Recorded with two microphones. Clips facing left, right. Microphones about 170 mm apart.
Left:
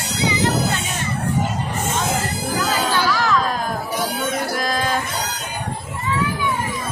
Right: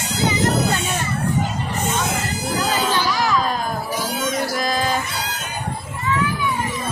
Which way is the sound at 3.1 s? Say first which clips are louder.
Left 1 dB; 15° right (ahead or behind).